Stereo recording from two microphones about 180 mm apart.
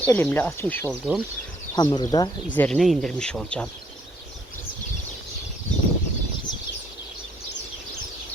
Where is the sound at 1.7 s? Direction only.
20° left (ahead or behind).